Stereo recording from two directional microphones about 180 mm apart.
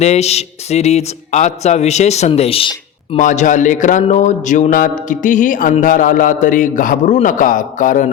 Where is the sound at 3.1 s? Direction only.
45° left (ahead or behind).